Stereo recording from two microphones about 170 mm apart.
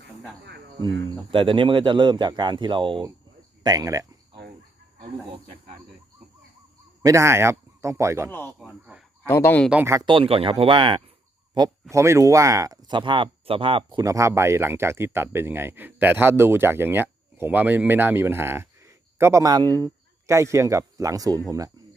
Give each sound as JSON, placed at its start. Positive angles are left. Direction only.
{"t": 1.3, "sound": "speech", "side_deg": -30}
{"t": 3.6, "sound": "cricket", "side_deg": -20}
{"t": 4.9, "sound": "speech", "side_deg": -35}
{"t": 7.0, "sound": "speech", "side_deg": -15}
{"t": 8.3, "sound": "speech", "side_deg": 10}
{"t": 8.5, "sound": "speech", "side_deg": 0}
{"t": 9.2, "sound": "speech", "side_deg": 15}
{"t": 9.6, "sound": "speech", "side_deg": -10}
{"t": 10.1, "sound": "speech", "side_deg": -30}